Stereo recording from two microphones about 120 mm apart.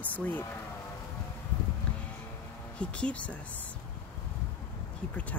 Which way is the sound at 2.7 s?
10° left (ahead or behind).